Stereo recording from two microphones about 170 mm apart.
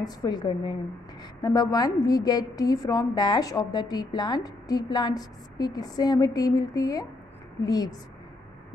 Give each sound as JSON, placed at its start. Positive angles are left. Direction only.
{"t": 0.0, "sound": "a woman's voice", "side_deg": 25}